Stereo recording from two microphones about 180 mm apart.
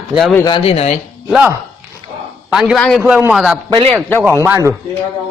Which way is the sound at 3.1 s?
5° right (ahead or behind).